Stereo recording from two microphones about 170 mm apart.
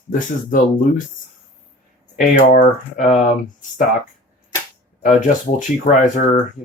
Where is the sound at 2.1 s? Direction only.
45° left (ahead or behind).